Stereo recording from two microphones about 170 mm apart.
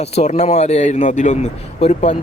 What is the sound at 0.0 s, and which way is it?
A man's voice, 40° left (ahead or behind).